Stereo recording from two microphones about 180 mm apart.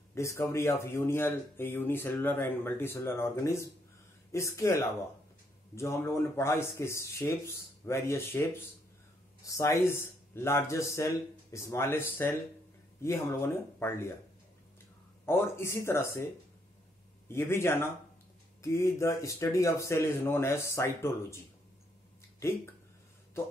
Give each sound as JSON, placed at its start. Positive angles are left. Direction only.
{"t": 0.1, "sound": "speech", "side_deg": 15}
{"t": 9.5, "sound": "speech", "side_deg": 15}
{"t": 15.2, "sound": "speech", "side_deg": 15}
{"t": 17.3, "sound": "speech", "side_deg": 15}